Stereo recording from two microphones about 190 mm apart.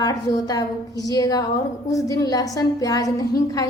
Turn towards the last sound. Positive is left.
turn(degrees=20)  # may be behind; listen again after turning